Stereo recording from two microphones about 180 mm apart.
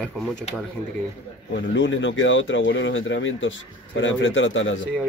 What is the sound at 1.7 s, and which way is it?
Speech, 90° left.